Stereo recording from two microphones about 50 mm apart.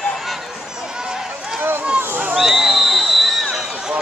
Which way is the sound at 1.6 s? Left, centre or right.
Right.